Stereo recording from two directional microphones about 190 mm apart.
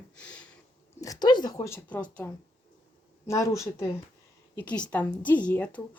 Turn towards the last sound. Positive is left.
turn(degrees=10)  # may be behind; listen again after turning